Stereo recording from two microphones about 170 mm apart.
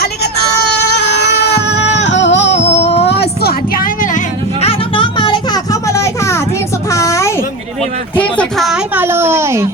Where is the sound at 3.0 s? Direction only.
75° left (ahead or behind); by 7.4 s 20° left (ahead or behind).